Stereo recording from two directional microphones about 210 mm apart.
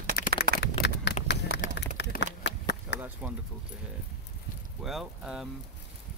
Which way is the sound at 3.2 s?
5° right (ahead or behind).